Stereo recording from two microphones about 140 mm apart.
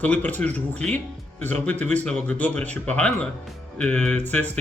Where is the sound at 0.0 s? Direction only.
10° left (ahead or behind).